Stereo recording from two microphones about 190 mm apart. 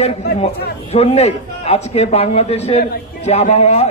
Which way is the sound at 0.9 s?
30° left (ahead or behind).